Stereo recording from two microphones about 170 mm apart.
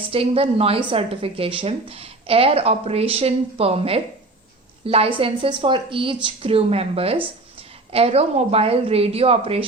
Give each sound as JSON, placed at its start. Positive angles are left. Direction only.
{"t": 0.1, "sound": "a woman's voice", "side_deg": -35}